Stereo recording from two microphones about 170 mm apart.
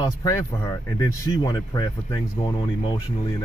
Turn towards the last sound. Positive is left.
turn(degrees=20)  # may be behind; listen again after turning